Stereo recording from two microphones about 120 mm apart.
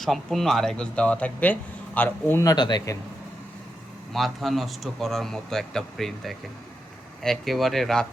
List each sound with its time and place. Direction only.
0.0 s a man's voice: centre (ahead or behind)
2.4 s speech: 35° left (ahead or behind)
4.1 s speech: centre (ahead or behind)